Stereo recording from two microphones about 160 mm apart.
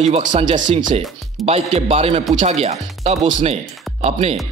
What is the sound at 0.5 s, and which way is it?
Speech, 30° right (ahead or behind).